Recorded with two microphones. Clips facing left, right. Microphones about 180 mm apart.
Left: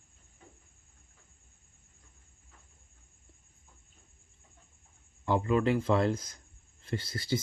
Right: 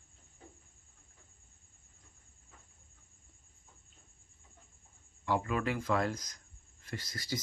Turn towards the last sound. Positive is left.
turn(degrees=25)  # may be behind; listen again after turning